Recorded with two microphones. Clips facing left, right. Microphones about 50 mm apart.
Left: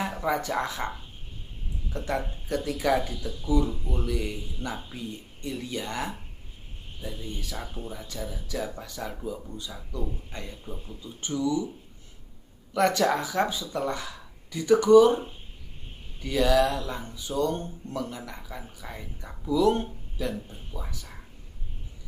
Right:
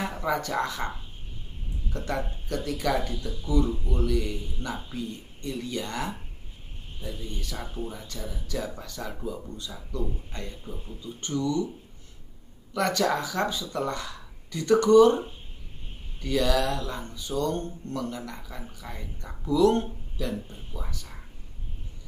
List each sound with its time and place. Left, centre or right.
0.0 s speech: centre
2.0 s speech: centre
7.5 s speech: centre
12.7 s speech: centre
16.2 s speech: centre